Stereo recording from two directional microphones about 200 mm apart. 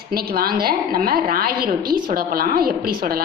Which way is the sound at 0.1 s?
50° right (ahead or behind).